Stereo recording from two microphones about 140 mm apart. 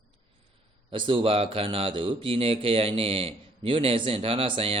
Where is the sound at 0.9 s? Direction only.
35° right (ahead or behind).